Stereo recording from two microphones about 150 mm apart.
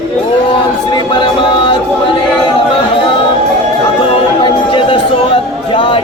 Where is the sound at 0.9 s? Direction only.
30° left (ahead or behind).